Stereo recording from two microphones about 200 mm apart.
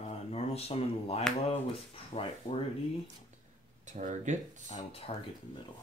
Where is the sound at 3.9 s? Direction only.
35° right (ahead or behind).